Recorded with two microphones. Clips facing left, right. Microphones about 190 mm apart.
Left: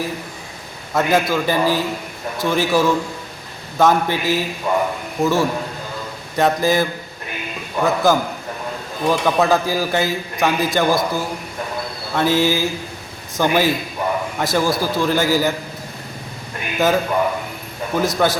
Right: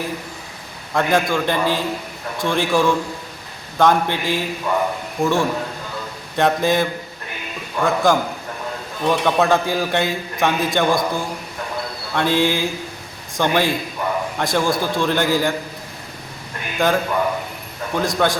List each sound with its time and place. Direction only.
0.9 s a man's voice: 5° left (ahead or behind)
4.7 s a man's voice: 20° left (ahead or behind)
5.2 s a man's voice: centre (ahead or behind)
16.7 s a man's voice: 5° left (ahead or behind)